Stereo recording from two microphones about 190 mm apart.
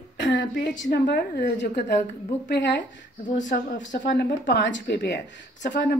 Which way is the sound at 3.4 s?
75° left (ahead or behind).